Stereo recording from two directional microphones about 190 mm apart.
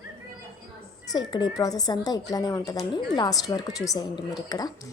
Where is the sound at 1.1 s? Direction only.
20° left (ahead or behind).